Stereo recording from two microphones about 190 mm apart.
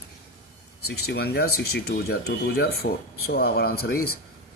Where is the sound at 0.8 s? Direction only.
55° left (ahead or behind).